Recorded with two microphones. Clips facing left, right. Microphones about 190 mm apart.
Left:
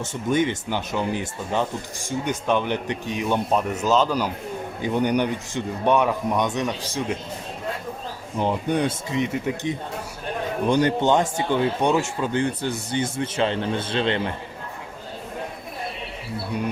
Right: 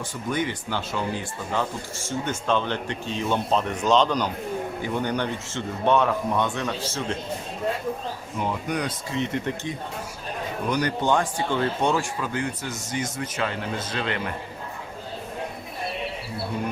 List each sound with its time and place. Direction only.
0.0 s speech: 25° left (ahead or behind)
8.4 s speech: 30° left (ahead or behind)
9.1 s speech: 10° left (ahead or behind)
10.7 s speech: 25° left (ahead or behind)